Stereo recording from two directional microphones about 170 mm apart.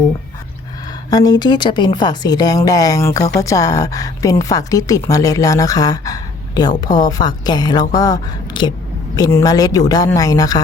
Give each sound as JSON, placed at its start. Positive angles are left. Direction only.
{"t": 1.1, "sound": "a woman's voice", "side_deg": 25}